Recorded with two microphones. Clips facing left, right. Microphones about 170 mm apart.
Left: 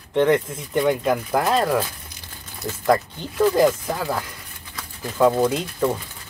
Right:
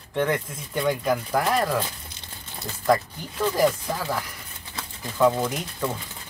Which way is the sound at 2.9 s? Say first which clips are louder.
Left 2 dB; 20° left (ahead or behind).